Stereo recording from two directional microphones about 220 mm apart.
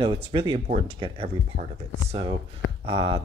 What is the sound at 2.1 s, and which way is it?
Speech, 25° right (ahead or behind).